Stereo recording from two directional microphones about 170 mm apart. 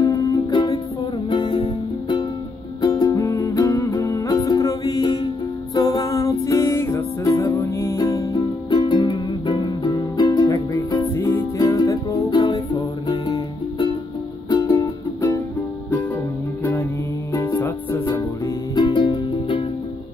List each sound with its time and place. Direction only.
0.0 s music: 20° left (ahead or behind)
17.6 s music: 15° left (ahead or behind)
18.8 s music: 25° left (ahead or behind)